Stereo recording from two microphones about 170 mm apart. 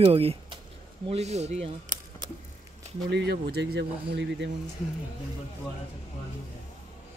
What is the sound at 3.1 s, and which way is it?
Speech, 80° right.